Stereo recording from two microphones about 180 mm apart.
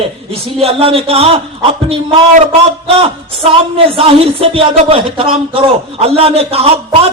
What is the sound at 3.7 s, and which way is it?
Speech, 30° right (ahead or behind).